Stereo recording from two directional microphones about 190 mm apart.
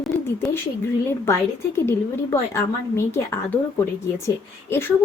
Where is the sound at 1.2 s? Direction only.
15° left (ahead or behind).